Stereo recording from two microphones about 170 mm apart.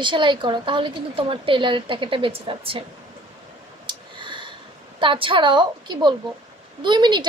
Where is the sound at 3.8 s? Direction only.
30° right (ahead or behind).